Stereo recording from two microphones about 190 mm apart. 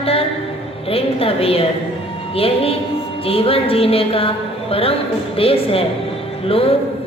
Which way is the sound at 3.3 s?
30° left (ahead or behind).